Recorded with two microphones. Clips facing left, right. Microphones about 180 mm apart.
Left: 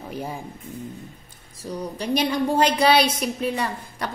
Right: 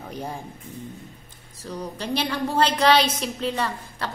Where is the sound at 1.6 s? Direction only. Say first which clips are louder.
Left 3 dB; 15° left (ahead or behind).